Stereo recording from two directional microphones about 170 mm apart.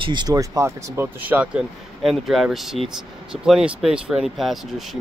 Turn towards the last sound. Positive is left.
turn(degrees=0)  # may be behind; listen again after turning